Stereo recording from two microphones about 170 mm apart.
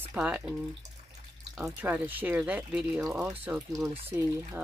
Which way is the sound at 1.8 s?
10° right (ahead or behind).